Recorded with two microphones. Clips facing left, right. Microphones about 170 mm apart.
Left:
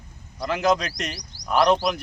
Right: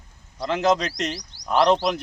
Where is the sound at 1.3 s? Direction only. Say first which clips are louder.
Right 1 dB; 40° left (ahead or behind).